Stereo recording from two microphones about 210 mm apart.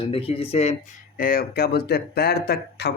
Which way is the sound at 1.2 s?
45° left (ahead or behind).